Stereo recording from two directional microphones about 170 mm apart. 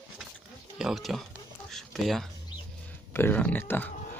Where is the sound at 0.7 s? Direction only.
Centre (ahead or behind).